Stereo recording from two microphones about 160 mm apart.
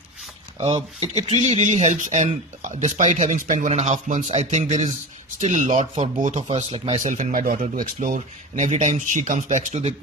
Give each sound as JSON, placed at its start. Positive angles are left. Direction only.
{"t": 0.6, "sound": "speech", "side_deg": -40}
{"t": 3.7, "sound": "speech", "side_deg": -40}